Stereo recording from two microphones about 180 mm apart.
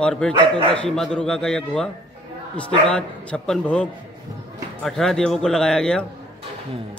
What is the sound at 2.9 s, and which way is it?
Speech, 5° left (ahead or behind).